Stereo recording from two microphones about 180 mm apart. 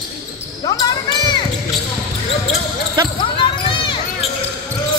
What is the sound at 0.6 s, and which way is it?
Basketball bounce, 20° left (ahead or behind).